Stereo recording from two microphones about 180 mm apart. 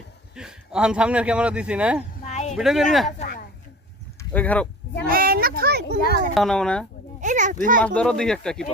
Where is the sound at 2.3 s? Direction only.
40° left (ahead or behind).